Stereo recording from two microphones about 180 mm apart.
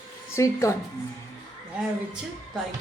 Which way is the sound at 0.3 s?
15° left (ahead or behind).